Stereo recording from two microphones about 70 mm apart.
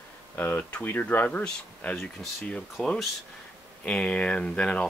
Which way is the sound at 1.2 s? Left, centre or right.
Centre.